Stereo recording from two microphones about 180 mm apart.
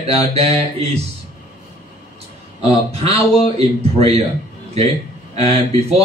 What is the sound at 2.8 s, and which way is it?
A man's voice, 35° right (ahead or behind).